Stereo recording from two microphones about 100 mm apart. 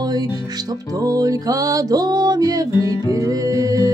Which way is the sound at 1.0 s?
35° right (ahead or behind).